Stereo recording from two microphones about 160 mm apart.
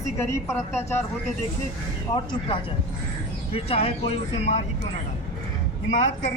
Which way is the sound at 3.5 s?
35° left (ahead or behind).